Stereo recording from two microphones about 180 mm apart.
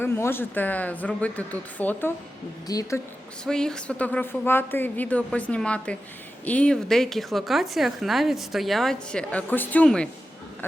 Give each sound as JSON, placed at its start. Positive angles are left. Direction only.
{"t": 0.0, "sound": "a woman's voice", "side_deg": 10}
{"t": 3.4, "sound": "a woman's voice", "side_deg": 5}